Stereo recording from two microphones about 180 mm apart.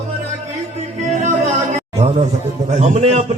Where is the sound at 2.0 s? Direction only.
35° right (ahead or behind).